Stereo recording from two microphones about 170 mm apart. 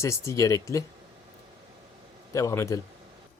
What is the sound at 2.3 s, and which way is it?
Speech, 15° left (ahead or behind).